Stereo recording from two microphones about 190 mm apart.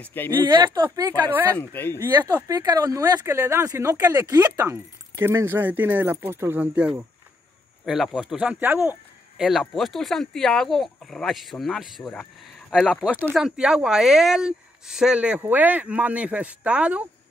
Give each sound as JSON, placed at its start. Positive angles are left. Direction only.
{"t": 0.0, "sound": "speech", "side_deg": 10}
{"t": 0.5, "sound": "speech", "side_deg": -25}
{"t": 1.6, "sound": "speech", "side_deg": 10}
{"t": 2.0, "sound": "speech", "side_deg": -10}